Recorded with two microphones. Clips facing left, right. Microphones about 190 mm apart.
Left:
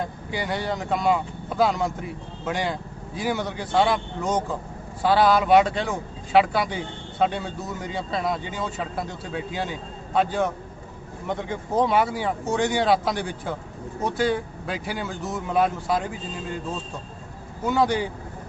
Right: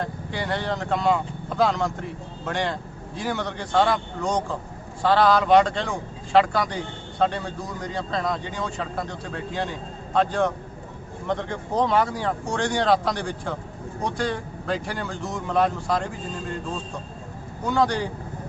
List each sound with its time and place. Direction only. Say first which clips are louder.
0.0 s speech: even; 5° left (ahead or behind)
17.6 s speech: left 1 dB; 5° left (ahead or behind)